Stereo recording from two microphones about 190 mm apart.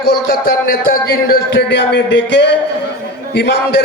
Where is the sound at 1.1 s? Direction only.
60° left (ahead or behind).